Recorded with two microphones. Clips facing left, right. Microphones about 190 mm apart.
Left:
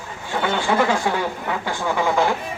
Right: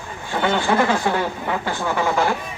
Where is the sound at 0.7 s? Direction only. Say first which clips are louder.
Right 1 dB; 10° left (ahead or behind).